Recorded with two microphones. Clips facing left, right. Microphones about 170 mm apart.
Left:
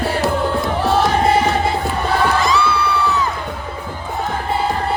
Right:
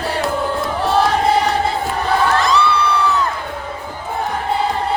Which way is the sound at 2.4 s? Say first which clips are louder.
Right 1 dB; centre (ahead or behind).